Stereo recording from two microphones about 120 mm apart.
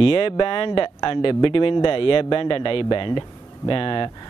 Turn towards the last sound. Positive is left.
turn(degrees=45)  # may be behind; listen again after turning